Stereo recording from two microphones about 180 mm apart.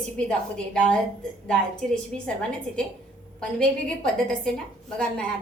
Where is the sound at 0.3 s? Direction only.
5° left (ahead or behind).